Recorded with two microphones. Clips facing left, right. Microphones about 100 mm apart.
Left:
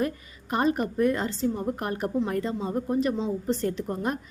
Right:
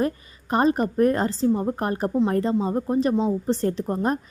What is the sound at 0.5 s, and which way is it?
A woman's voice, 35° right (ahead or behind).